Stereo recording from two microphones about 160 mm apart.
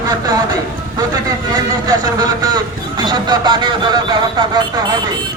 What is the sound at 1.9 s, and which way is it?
Speech, 25° right (ahead or behind).